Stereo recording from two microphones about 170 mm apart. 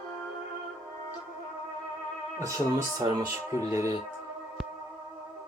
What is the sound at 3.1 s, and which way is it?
Speech, 15° right (ahead or behind).